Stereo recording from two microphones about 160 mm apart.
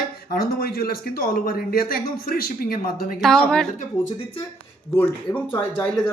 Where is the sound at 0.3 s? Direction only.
75° left (ahead or behind).